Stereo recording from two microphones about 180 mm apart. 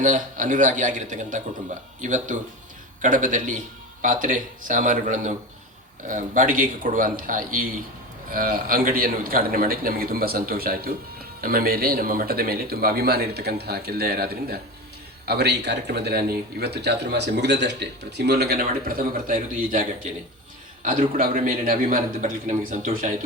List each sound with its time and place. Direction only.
0.0 s a man's voice: 45° right (ahead or behind); by 18.6 s 60° right (ahead or behind)
18.9 s a man's voice: 50° right (ahead or behind)
21.2 s a man's voice: 50° right (ahead or behind)